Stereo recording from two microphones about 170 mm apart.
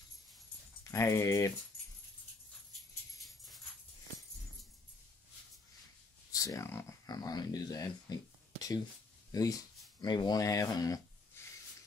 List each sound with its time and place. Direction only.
0.9 s speech: 15° left (ahead or behind)
2.7 s music: centre (ahead or behind)
6.3 s speech: 20° left (ahead or behind)
9.3 s speech: 20° left (ahead or behind)